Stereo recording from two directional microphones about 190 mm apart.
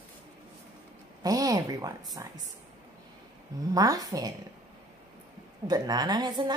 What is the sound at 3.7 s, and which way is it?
Speech, 20° right (ahead or behind).